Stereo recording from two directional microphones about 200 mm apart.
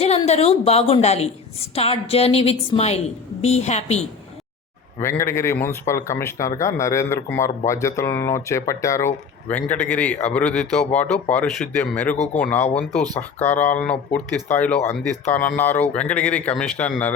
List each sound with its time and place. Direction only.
0.3 s a woman's voice: 30° left (ahead or behind)
5.0 s speech: 15° left (ahead or behind)